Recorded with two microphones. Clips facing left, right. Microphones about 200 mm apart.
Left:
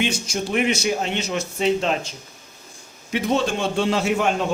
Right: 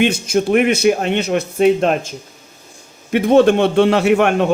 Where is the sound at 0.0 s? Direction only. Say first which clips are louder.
Right 9 dB; 60° right (ahead or behind).